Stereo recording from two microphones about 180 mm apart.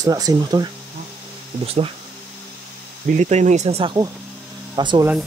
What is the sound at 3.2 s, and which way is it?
Speech, 40° right (ahead or behind).